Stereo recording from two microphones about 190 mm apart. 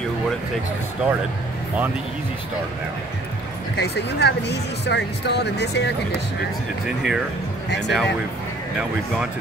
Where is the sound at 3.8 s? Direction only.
60° left (ahead or behind).